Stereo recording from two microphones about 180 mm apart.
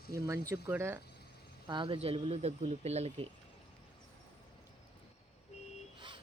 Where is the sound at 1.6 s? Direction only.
25° right (ahead or behind).